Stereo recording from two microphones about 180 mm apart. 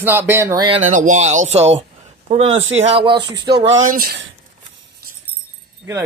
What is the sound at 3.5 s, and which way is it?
Speech, 90° right.